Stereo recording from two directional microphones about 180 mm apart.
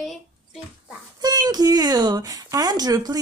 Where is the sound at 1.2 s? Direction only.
20° right (ahead or behind).